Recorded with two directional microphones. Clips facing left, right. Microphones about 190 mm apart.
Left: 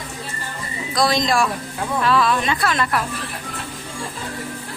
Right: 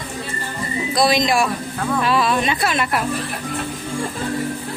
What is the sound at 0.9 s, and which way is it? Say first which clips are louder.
A woman's voice: right 1 dB; 20° right (ahead or behind).